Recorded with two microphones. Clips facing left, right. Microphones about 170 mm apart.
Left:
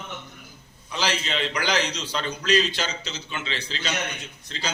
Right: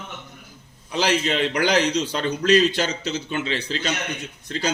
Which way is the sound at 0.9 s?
50° right (ahead or behind).